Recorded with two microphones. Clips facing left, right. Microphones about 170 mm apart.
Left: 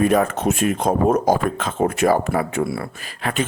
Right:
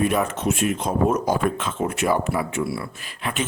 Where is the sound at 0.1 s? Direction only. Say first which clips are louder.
Left 4 dB; 45° left (ahead or behind).